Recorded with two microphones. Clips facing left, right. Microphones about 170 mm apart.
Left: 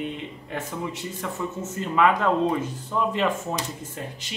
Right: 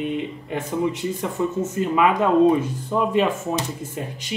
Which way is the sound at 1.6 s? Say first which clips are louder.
Right 1 dB; 15° right (ahead or behind).